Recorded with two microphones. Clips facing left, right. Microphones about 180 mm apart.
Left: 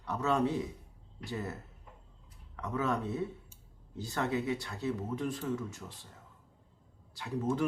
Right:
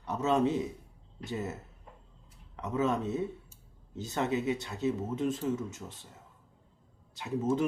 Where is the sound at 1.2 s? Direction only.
20° right (ahead or behind).